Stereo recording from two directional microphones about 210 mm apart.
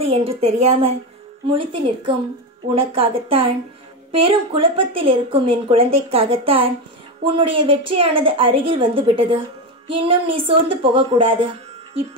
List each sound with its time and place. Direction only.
0.0 s a woman's voice: 25° right (ahead or behind)